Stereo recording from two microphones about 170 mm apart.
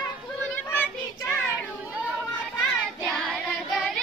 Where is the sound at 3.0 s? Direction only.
5° left (ahead or behind).